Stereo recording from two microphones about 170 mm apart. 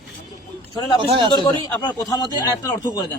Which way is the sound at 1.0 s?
30° right (ahead or behind).